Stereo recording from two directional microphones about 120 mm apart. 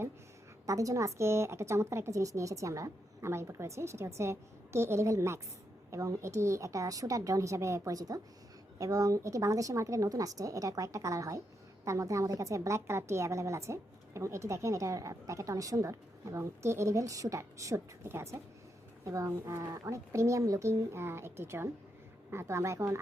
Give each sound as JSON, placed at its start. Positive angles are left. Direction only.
{"t": 0.6, "sound": "a woman's voice", "side_deg": -30}